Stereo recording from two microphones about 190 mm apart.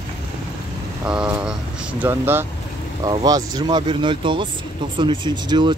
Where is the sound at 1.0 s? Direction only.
5° right (ahead or behind).